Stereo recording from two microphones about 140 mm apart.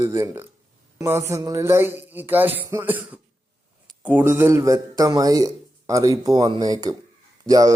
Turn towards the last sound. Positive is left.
turn(degrees=-25)  # may be behind; listen again after turning